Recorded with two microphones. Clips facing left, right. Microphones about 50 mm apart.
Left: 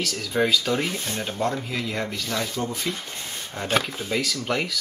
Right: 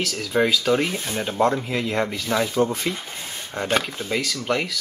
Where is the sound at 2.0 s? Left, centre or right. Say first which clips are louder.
Right 5 dB; centre.